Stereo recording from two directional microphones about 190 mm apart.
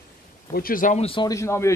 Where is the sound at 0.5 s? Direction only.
50° left (ahead or behind).